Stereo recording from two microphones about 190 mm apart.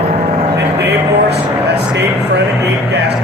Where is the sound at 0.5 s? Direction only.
60° right (ahead or behind).